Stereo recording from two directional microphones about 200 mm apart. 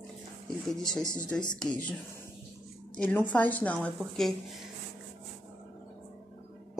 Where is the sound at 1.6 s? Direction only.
5° left (ahead or behind).